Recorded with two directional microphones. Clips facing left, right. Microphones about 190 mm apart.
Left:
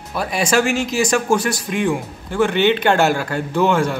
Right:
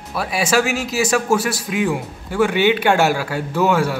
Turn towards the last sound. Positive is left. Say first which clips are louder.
# left 1 dB
turn(degrees=-5)  # may be behind; listen again after turning